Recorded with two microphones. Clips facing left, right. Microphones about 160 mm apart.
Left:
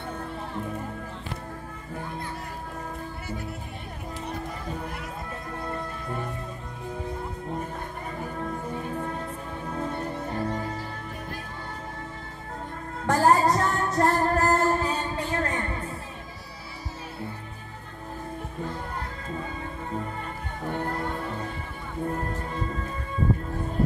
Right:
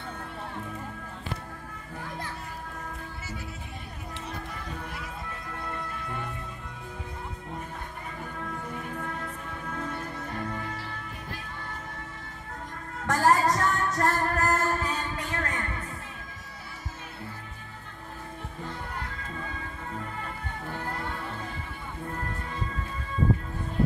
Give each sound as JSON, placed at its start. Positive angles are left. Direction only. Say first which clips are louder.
{"t": 5.5, "sound": "music", "louder": "left 4 dB", "side_deg": 30}
{"t": 8.2, "sound": "music", "louder": "left 5 dB", "side_deg": 35}
{"t": 13.0, "sound": "music", "louder": "left 3 dB", "side_deg": 30}
{"t": 22.0, "sound": "music", "louder": "left 6 dB", "side_deg": 30}